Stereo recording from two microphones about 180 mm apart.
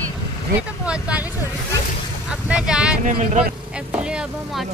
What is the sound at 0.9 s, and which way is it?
Vehicle, 5° right (ahead or behind).